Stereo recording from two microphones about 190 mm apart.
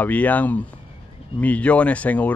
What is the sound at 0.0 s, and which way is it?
Speech, 10° left (ahead or behind).